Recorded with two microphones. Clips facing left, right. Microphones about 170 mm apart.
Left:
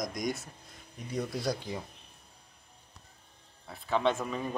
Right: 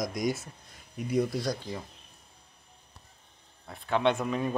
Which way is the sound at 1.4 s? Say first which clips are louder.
Right 1 dB; 10° left (ahead or behind).